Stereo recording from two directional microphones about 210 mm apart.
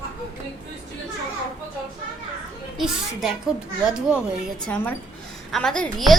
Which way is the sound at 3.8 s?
5° right (ahead or behind).